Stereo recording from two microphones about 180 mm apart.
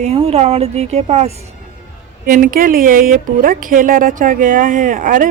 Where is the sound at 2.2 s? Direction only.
50° right (ahead or behind).